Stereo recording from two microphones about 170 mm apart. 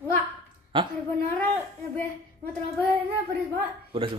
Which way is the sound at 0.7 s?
30° right (ahead or behind).